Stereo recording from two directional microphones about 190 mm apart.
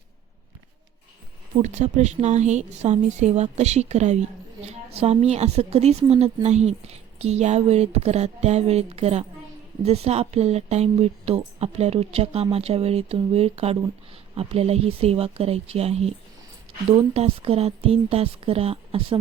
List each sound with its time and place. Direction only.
1.6 s a woman's voice: 40° right (ahead or behind)